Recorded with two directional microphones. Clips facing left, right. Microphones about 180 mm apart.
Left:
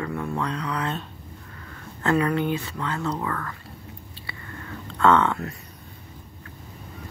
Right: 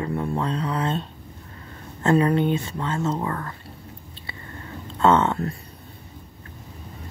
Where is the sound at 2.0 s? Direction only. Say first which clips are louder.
Right 3 dB; 25° right (ahead or behind).